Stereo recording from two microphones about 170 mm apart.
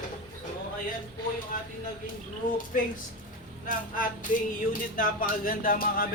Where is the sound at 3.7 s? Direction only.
50° left (ahead or behind).